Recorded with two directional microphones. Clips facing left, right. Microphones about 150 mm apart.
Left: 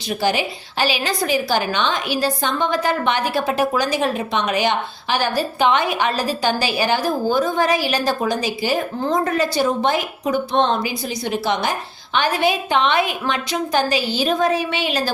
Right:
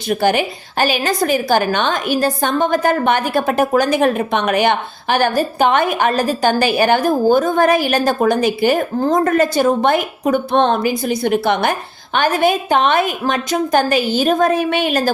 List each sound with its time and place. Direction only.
0.1 s a woman's voice: 55° right (ahead or behind)